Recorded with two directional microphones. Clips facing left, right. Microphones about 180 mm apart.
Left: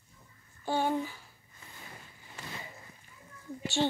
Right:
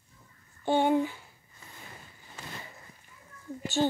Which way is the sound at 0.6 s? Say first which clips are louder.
Right 6 dB; 20° right (ahead or behind).